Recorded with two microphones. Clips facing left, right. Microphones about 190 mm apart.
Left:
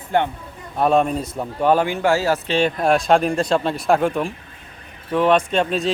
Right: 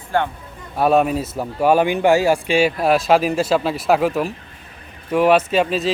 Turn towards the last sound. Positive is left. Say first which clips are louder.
# right 2 dB
turn(degrees=0)  # may be behind; listen again after turning